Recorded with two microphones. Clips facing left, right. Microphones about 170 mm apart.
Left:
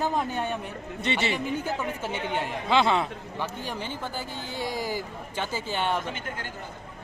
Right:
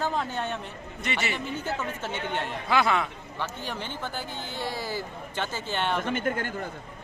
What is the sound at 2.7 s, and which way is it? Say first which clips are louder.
Speech: left 2 dB; 25° left (ahead or behind).